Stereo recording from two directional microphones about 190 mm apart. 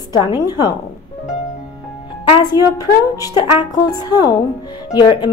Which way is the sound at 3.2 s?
20° left (ahead or behind).